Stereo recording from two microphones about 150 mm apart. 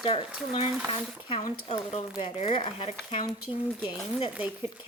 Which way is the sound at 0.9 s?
40° left (ahead or behind).